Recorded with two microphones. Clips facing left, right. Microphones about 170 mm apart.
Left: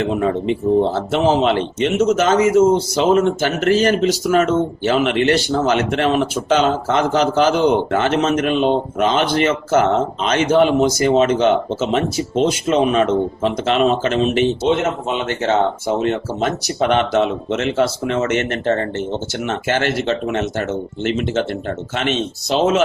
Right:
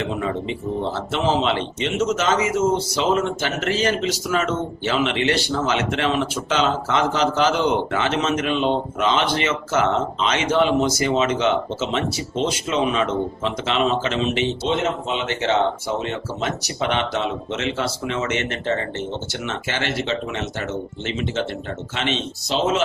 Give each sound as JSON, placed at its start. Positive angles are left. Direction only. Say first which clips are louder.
{"t": 0.0, "sound": "speech", "louder": "left 6 dB", "side_deg": 50}